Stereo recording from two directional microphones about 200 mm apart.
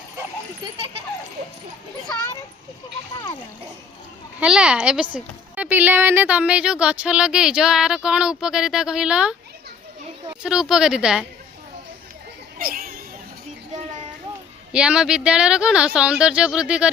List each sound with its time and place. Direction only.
4.4 s speech: 5° right (ahead or behind)
10.4 s speech: 5° right (ahead or behind)
12.5 s a sound: 45° right (ahead or behind)
14.7 s speech: 5° right (ahead or behind)